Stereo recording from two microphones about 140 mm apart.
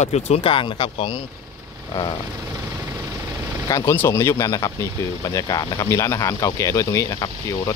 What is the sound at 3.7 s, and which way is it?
Speech, 20° left (ahead or behind).